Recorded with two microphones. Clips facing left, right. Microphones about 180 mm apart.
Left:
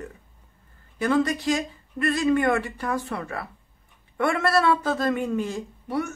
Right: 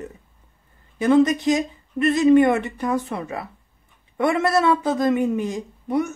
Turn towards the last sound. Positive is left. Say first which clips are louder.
# right 5 dB
turn(degrees=-20)  # may be behind; listen again after turning